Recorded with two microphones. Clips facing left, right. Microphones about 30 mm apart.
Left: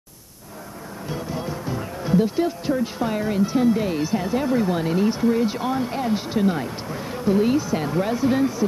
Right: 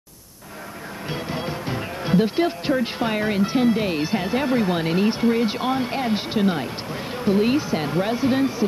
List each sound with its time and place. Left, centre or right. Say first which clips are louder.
1.1 s speech: right 1 dB; right